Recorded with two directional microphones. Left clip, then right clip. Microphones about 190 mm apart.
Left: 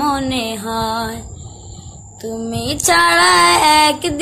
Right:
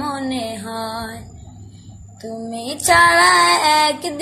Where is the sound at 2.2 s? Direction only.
20° left (ahead or behind).